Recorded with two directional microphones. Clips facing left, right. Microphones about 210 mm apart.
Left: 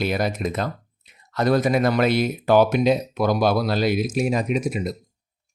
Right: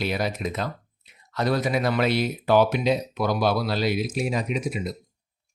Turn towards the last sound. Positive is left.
turn(degrees=45)  # may be behind; listen again after turning